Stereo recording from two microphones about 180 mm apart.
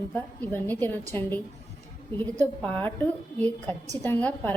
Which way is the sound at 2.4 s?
10° left (ahead or behind).